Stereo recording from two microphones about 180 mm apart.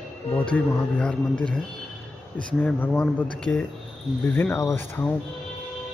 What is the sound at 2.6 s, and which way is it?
Speech, 5° left (ahead or behind).